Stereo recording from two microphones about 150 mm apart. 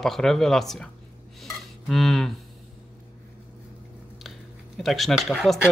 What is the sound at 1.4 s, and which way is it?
Cutlery, centre (ahead or behind).